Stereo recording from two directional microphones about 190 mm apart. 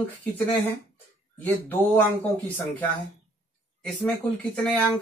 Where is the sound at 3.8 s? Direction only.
5° left (ahead or behind).